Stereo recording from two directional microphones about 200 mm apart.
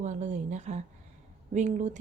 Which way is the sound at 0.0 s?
35° right (ahead or behind).